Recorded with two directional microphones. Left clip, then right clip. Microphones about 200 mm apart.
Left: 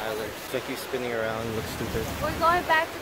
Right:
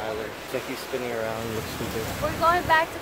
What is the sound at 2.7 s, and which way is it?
Speech, 20° right (ahead or behind).